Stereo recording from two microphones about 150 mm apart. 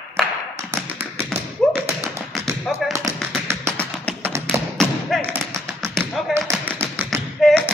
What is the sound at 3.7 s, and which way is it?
Music, 10° left (ahead or behind).